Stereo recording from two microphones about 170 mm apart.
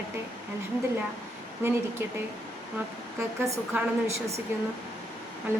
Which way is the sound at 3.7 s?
15° right (ahead or behind).